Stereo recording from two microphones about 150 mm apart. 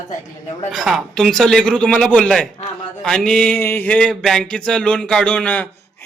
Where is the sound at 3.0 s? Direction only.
5° left (ahead or behind).